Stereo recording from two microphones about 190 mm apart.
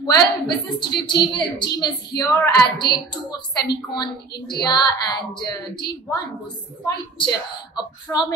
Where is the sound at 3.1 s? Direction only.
20° left (ahead or behind).